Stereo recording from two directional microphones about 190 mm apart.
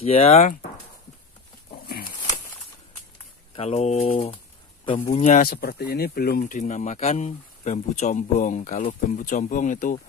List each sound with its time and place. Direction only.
0.0 s speech: 30° left (ahead or behind)
3.5 s speech: 35° left (ahead or behind)
5.4 s speech: 55° left (ahead or behind)